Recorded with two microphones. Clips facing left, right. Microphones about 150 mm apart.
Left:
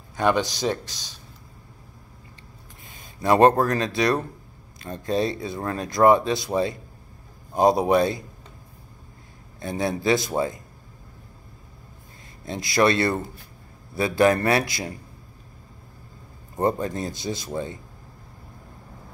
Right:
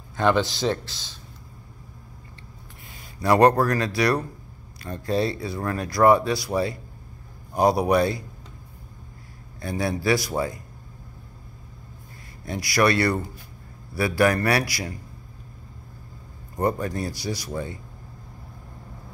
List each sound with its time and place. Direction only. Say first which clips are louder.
0.2 s speech: right 1 dB; 15° left (ahead or behind)
3.2 s speech: left 1 dB; 20° left (ahead or behind)
9.6 s speech: left 1 dB; 20° left (ahead or behind)
12.4 s speech: left 1 dB; 25° left (ahead or behind)
16.5 s speech: left 1 dB; 25° left (ahead or behind)